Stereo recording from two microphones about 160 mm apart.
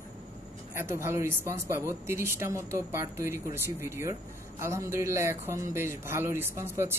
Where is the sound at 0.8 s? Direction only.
15° right (ahead or behind).